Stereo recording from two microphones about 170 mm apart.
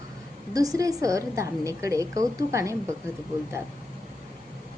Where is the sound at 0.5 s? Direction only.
20° right (ahead or behind).